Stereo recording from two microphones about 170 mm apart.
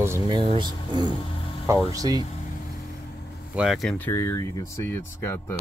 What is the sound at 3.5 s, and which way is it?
Speech, centre (ahead or behind).